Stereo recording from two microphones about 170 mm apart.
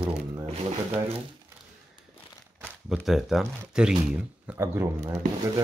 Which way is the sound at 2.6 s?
5° right (ahead or behind).